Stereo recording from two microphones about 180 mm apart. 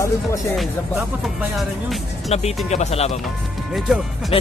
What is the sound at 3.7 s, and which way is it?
Music, centre (ahead or behind).